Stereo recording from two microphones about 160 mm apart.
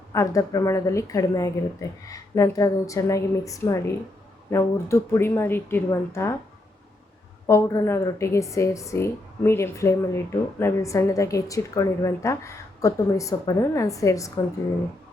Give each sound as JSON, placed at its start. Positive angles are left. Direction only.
{"t": 0.1, "sound": "a woman's voice", "side_deg": 20}
{"t": 7.4, "sound": "a woman's voice", "side_deg": 20}